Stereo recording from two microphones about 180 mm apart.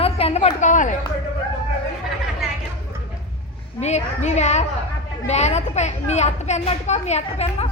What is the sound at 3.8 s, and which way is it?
A woman's voice, 40° left (ahead or behind).